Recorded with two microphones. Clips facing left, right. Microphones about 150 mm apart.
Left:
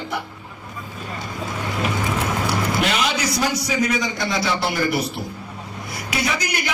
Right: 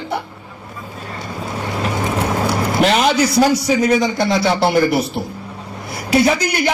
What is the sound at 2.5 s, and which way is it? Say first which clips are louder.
A man's voice: right 7 dB; 40° right (ahead or behind).